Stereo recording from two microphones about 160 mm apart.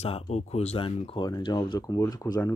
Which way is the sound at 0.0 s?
40° left (ahead or behind).